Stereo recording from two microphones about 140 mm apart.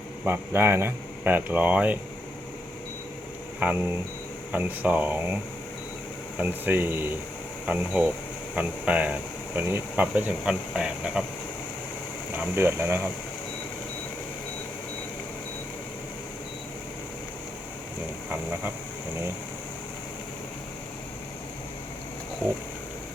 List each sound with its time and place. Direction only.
0.3 s speech: 15° right (ahead or behind)
3.6 s speech: 10° right (ahead or behind)
6.4 s speech: 15° right (ahead or behind)
12.4 s speech: 15° right (ahead or behind)